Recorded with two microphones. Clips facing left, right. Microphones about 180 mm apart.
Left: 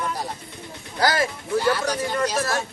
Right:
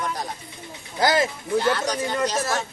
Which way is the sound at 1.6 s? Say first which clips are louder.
Left 2 dB; 10° left (ahead or behind).